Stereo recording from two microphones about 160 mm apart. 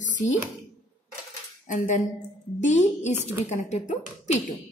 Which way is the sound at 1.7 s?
55° left (ahead or behind).